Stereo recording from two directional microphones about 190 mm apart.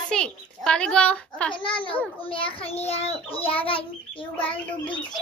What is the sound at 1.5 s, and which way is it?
A child's voice, 25° left (ahead or behind).